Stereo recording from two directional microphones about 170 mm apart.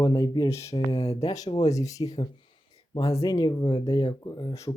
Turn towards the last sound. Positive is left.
turn(degrees=20)  # may be behind; listen again after turning